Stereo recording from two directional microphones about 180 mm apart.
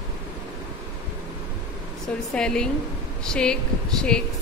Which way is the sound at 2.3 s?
5° left (ahead or behind).